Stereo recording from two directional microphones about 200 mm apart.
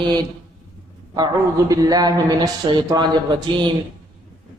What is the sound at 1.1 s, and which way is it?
A man's voice, 20° right (ahead or behind).